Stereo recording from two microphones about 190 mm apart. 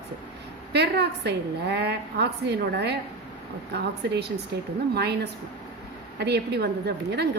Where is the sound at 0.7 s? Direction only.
60° right (ahead or behind).